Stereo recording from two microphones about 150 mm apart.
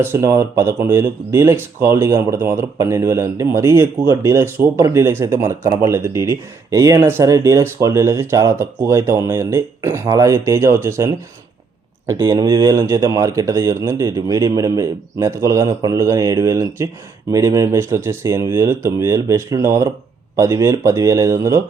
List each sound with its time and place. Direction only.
0.0 s speech: 20° right (ahead or behind)